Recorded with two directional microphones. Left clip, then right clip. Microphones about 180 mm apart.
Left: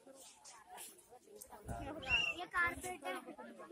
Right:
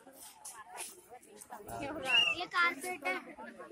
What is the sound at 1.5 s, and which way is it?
Speech, 5° right (ahead or behind).